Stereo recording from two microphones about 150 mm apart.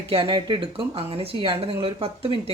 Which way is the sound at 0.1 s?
35° right (ahead or behind).